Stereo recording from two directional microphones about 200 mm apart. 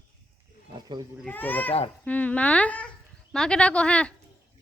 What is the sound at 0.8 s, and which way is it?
Speech, 20° right (ahead or behind).